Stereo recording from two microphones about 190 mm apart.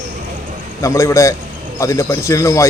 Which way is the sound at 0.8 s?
15° left (ahead or behind).